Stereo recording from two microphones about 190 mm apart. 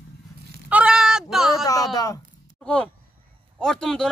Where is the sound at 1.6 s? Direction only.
20° left (ahead or behind).